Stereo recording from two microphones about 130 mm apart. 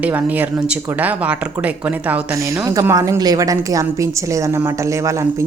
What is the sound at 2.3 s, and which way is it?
A woman's voice, 20° right (ahead or behind).